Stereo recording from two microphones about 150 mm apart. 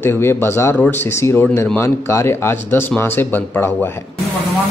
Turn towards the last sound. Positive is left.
turn(degrees=15)  # may be behind; listen again after turning